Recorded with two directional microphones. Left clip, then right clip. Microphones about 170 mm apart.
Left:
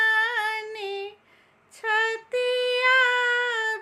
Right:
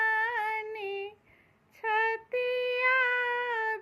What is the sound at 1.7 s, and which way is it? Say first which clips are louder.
Child singing: left 4 dB; 20° left (ahead or behind).